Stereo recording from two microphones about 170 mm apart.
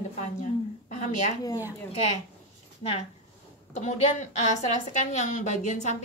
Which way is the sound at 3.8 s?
45° left (ahead or behind).